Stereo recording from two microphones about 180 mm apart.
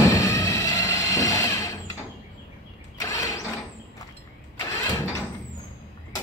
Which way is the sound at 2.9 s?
20° left (ahead or behind).